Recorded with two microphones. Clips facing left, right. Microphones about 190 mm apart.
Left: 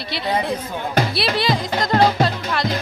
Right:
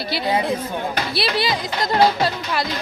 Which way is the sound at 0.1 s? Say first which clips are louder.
Right 1 dB; 5° right (ahead or behind).